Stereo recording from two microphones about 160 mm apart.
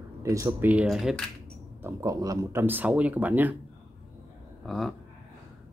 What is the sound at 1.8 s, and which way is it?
Speech, 20° right (ahead or behind).